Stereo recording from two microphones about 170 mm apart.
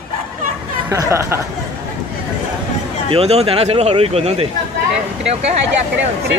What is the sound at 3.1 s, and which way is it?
Speech, 35° right (ahead or behind).